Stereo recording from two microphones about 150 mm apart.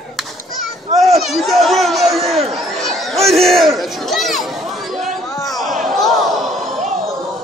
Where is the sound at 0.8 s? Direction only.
50° right (ahead or behind).